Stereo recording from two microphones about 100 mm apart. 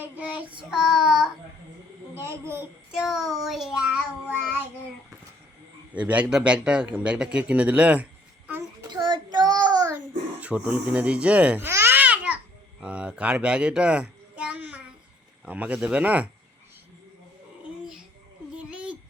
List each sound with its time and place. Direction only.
0.0 s a man's voice: 15° right (ahead or behind)
2.1 s a child's voice: 25° right (ahead or behind)
2.9 s child singing: 5° right (ahead or behind)
5.9 s a man's voice: 15° right (ahead or behind)
8.9 s child singing: 45° right (ahead or behind)
10.4 s a man's voice: 15° right (ahead or behind)
11.6 s babbling: 25° right (ahead or behind)
12.8 s a child's voice: 10° right (ahead or behind)
18.5 s a sound: 10° right (ahead or behind)